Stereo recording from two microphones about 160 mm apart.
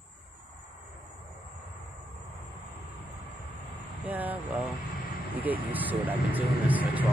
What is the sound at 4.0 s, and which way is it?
Speech, 10° right (ahead or behind).